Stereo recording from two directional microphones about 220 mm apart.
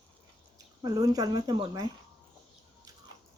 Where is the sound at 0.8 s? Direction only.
15° right (ahead or behind).